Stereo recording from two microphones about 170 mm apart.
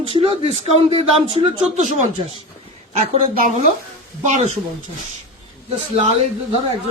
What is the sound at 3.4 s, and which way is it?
Speech, 45° right (ahead or behind).